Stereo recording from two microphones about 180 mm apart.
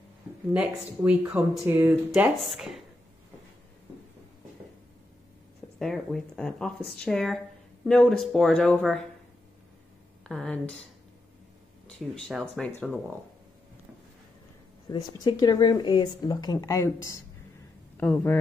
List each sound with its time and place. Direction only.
0.5 s speech: 5° right (ahead or behind)
5.8 s speech: centre (ahead or behind)
10.2 s speech: 5° left (ahead or behind)
12.0 s speech: centre (ahead or behind)
14.9 s speech: 25° left (ahead or behind)